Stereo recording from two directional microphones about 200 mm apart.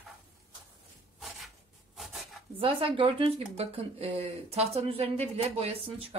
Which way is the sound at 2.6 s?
25° right (ahead or behind).